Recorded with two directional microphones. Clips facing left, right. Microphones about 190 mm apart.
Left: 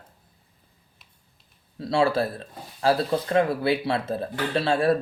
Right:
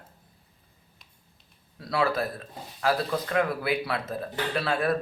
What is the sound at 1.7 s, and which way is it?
Speech, 25° left (ahead or behind).